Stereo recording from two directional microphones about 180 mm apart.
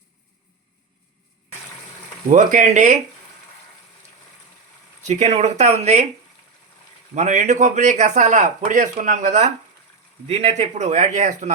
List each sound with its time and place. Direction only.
2.3 s speech: 45° right (ahead or behind)
5.0 s speech: 40° right (ahead or behind)
7.1 s speech: 40° right (ahead or behind)